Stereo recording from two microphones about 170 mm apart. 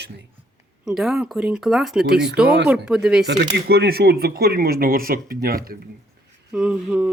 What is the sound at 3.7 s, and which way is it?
Speech, 65° right (ahead or behind).